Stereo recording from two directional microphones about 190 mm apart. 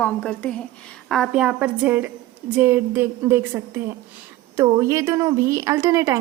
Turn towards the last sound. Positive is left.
turn(degrees=-15)  # may be behind; listen again after turning